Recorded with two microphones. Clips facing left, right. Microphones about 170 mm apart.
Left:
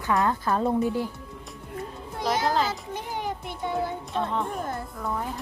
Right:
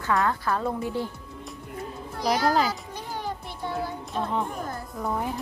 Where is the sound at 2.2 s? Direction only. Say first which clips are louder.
Right 2 dB; 20° left (ahead or behind).